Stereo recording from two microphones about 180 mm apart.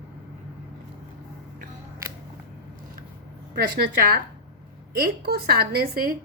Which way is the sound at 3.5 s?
60° right (ahead or behind).